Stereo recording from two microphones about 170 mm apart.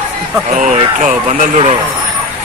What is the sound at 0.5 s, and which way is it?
Speech, 45° right (ahead or behind).